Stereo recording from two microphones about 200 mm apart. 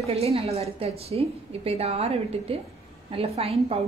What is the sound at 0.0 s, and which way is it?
A woman's voice, 30° right (ahead or behind).